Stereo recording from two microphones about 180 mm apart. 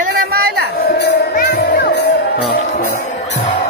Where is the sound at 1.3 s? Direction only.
55° left (ahead or behind).